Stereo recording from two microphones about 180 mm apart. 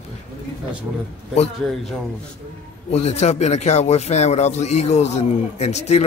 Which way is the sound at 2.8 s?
35° left (ahead or behind).